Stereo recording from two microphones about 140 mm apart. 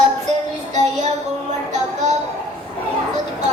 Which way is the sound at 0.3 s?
55° right (ahead or behind).